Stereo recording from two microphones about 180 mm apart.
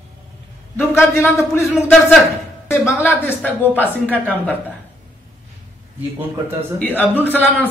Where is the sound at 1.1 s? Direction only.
15° left (ahead or behind).